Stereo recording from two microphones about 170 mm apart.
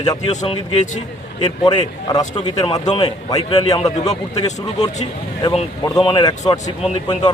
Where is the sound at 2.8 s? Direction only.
35° left (ahead or behind).